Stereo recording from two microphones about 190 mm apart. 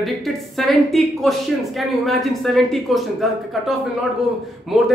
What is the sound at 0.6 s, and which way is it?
Speech, centre (ahead or behind).